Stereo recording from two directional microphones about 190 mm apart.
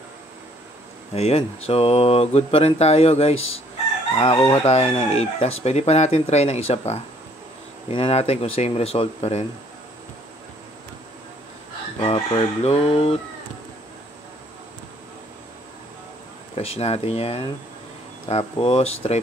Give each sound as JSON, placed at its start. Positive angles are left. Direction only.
{"t": 1.1, "sound": "speech", "side_deg": 30}
{"t": 4.2, "sound": "chicken", "side_deg": 25}
{"t": 4.6, "sound": "speech", "side_deg": 35}
{"t": 12.0, "sound": "speech", "side_deg": 30}
{"t": 16.5, "sound": "speech", "side_deg": 35}